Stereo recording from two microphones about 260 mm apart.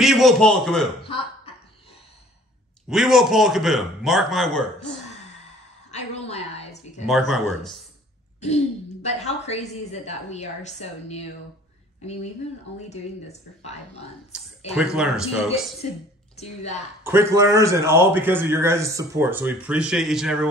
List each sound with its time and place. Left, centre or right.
0.0 s a man's voice: centre
1.0 s chuckle: left
2.9 s a man's voice: centre
5.9 s a sound: left
7.1 s a man's voice: centre
9.0 s a woman's voice: left
12.9 s a woman's voice: left
14.3 s a man's voice: centre
17.0 s a man's voice: centre